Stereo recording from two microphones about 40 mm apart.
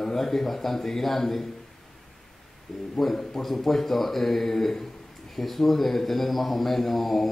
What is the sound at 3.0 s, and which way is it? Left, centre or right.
A man's voice, centre.